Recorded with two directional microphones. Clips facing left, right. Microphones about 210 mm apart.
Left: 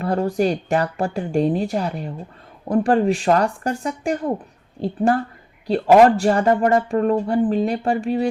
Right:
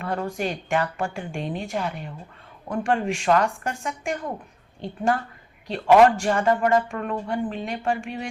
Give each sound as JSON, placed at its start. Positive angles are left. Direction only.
{"t": 0.0, "sound": "speech", "side_deg": 35}